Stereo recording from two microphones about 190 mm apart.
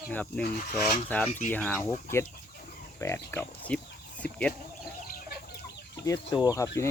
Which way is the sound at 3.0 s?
10° left (ahead or behind).